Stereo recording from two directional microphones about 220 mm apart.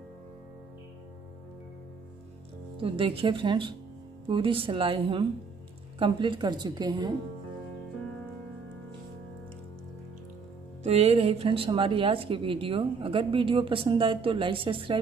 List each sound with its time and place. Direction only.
2.8 s speech: 25° right (ahead or behind)
10.8 s speech: 30° right (ahead or behind)